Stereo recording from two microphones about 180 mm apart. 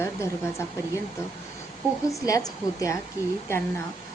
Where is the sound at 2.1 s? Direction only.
20° left (ahead or behind).